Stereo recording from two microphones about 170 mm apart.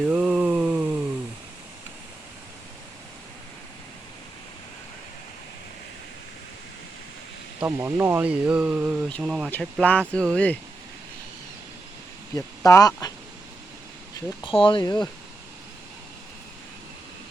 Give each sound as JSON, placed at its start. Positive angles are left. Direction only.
{"t": 0.0, "sound": "a sound", "side_deg": -5}
{"t": 7.6, "sound": "speech", "side_deg": -10}
{"t": 9.5, "sound": "speech", "side_deg": 5}
{"t": 12.3, "sound": "speech", "side_deg": 20}
{"t": 14.4, "sound": "speech", "side_deg": 30}